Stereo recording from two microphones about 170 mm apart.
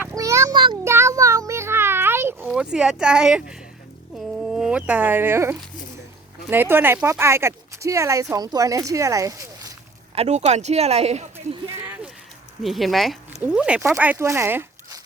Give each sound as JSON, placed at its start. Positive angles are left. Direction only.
{"t": 0.0, "sound": "a sound", "side_deg": -20}
{"t": 0.9, "sound": "a sound", "side_deg": -15}
{"t": 2.5, "sound": "speech", "side_deg": -5}
{"t": 4.4, "sound": "speech", "side_deg": -5}
{"t": 10.2, "sound": "speech", "side_deg": -40}
{"t": 12.6, "sound": "speech", "side_deg": 0}